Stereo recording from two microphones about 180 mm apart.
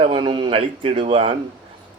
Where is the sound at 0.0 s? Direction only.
30° right (ahead or behind).